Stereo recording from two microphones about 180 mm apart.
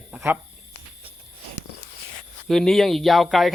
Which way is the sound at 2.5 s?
Centre (ahead or behind).